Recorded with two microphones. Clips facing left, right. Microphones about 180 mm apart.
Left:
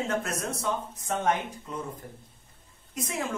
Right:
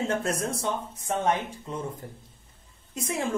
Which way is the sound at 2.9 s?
30° right (ahead or behind).